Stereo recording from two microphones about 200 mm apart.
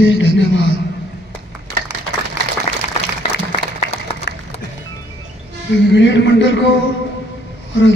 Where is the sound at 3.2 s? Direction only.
30° left (ahead or behind).